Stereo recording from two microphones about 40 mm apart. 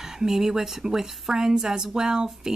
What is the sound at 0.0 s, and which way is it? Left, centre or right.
Speech, centre.